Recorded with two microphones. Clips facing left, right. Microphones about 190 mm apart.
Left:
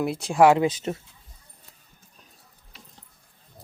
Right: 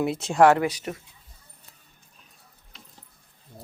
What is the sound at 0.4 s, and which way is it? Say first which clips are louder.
Speech: left 1 dB; 15° left (ahead or behind).